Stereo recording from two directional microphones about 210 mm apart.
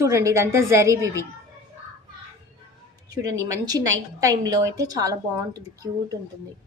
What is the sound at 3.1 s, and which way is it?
A woman's voice, 15° right (ahead or behind).